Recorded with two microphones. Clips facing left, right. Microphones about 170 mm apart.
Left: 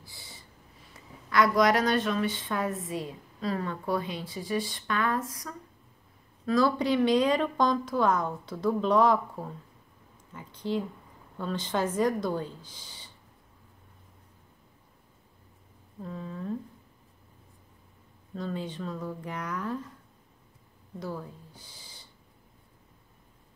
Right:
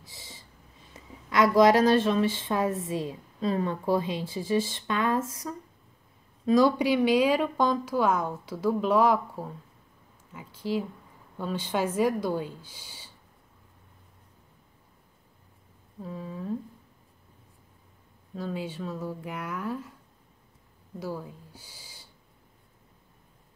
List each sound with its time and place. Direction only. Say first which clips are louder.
0.0 s a sound: right 2 dB; 20° right (ahead or behind)
0.9 s a woman's voice: even; 25° right (ahead or behind); by 13.1 s 10° right (ahead or behind)
16.0 s speech: right 1 dB; 5° right (ahead or behind)
18.3 s speech: right 1 dB; 5° right (ahead or behind)
21.0 s speech: right 2 dB; 5° right (ahead or behind)